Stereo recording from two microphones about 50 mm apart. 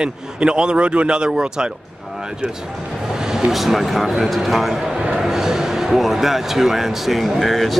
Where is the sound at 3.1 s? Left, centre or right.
Centre.